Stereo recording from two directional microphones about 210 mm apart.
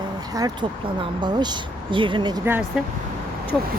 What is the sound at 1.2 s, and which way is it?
Speech, 20° right (ahead or behind).